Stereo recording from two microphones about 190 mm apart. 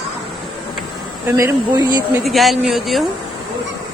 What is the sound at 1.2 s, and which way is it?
Speech, 15° right (ahead or behind).